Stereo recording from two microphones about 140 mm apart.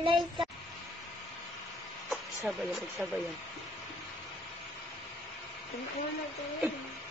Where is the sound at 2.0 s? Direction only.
Centre (ahead or behind).